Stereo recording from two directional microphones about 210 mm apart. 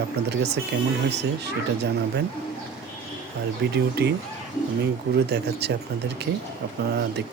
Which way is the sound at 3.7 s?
50° right (ahead or behind).